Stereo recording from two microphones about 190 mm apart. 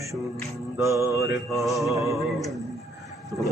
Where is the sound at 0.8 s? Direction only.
15° right (ahead or behind).